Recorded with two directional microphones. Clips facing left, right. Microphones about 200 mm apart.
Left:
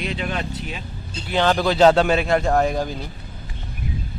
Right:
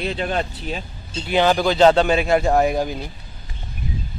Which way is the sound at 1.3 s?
15° right (ahead or behind).